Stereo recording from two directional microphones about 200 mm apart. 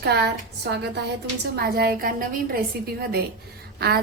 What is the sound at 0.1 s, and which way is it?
A woman's voice, 55° right (ahead or behind).